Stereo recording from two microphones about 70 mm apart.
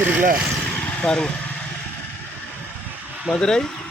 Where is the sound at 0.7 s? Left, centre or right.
Centre.